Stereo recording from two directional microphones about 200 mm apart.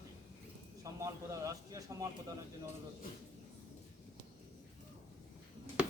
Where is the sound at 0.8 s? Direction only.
15° right (ahead or behind).